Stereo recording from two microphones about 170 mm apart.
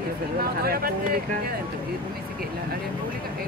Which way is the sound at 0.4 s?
60° right (ahead or behind).